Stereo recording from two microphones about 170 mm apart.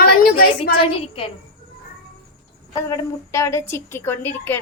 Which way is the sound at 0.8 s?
35° left (ahead or behind).